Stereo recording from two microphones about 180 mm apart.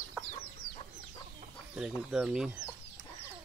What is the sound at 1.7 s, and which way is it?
Speech, 5° right (ahead or behind).